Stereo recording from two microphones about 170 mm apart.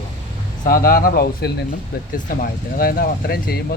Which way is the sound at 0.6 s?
55° left (ahead or behind).